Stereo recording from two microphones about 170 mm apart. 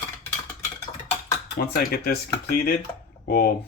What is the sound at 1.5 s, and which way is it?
Speech, 60° left (ahead or behind).